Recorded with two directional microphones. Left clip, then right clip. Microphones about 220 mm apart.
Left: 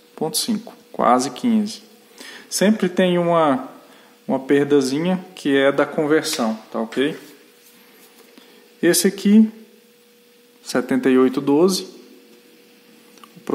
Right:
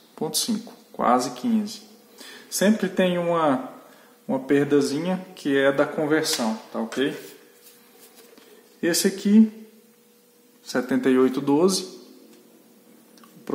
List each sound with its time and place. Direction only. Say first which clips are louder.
0.1 s speech: left 4 dB; 20° left (ahead or behind)
0.9 s speech: left 4 dB; 40° left (ahead or behind)
8.8 s speech: left 5 dB; 40° left (ahead or behind)
10.6 s speech: left 4 dB; 35° left (ahead or behind)